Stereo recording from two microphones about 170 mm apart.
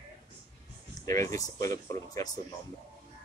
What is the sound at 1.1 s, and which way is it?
Speech, 20° left (ahead or behind).